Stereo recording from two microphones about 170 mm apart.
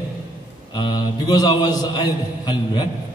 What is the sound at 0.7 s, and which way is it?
A man's voice, 25° left (ahead or behind).